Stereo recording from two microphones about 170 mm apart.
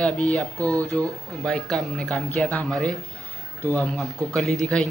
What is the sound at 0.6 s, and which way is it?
Speech, 20° right (ahead or behind).